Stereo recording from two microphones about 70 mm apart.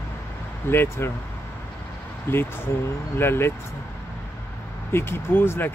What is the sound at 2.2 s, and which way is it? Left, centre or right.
Speech, left.